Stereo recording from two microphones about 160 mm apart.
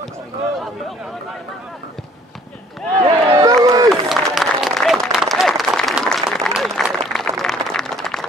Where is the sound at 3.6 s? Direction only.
25° right (ahead or behind).